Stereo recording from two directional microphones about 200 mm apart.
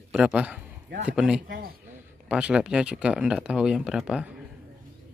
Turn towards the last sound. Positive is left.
turn(degrees=-5)  # may be behind; listen again after turning